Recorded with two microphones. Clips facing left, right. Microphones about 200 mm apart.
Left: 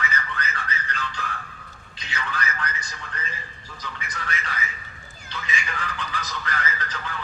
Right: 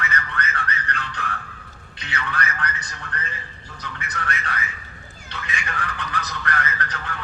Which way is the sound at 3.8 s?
65° right (ahead or behind).